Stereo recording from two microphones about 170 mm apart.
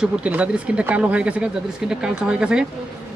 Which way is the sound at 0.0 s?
5° right (ahead or behind).